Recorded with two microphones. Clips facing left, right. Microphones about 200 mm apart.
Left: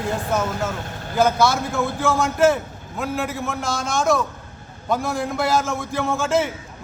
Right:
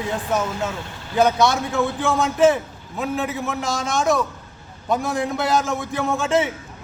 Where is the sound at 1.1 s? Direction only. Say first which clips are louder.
Right 1 dB; centre (ahead or behind).